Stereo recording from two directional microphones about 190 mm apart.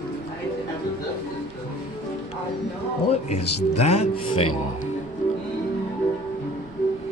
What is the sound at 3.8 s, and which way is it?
Speech, 35° left (ahead or behind).